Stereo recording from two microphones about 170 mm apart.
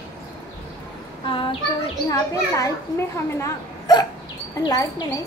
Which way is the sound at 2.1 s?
20° left (ahead or behind).